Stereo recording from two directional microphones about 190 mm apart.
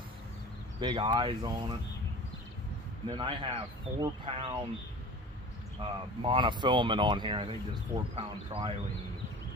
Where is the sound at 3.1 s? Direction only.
25° right (ahead or behind).